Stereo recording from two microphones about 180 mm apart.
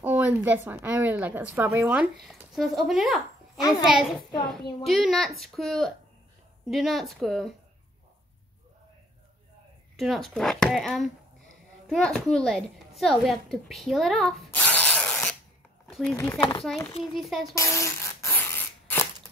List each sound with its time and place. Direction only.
0.0 s speech: 10° right (ahead or behind)
2.2 s speech: centre (ahead or behind)
9.9 s speech: centre (ahead or behind)
16.3 s speech: 25° left (ahead or behind)
16.6 s speech: 5° left (ahead or behind)
17.6 s a sound: 15° left (ahead or behind)